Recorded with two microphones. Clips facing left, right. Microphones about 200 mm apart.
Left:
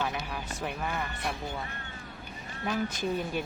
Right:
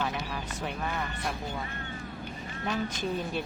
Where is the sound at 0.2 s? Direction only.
Centre (ahead or behind).